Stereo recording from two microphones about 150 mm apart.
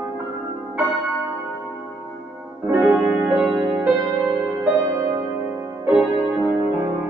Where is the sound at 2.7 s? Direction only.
10° right (ahead or behind).